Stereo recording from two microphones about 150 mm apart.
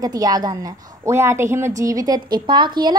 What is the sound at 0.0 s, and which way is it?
A woman's voice, 25° right (ahead or behind).